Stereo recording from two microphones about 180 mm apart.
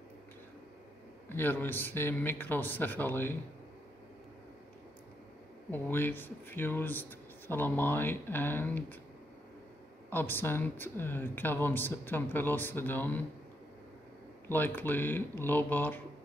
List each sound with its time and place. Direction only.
1.3 s speech: 10° left (ahead or behind)
5.7 s speech: 10° left (ahead or behind)
10.0 s speech: 10° left (ahead or behind)
14.5 s speech: 10° left (ahead or behind)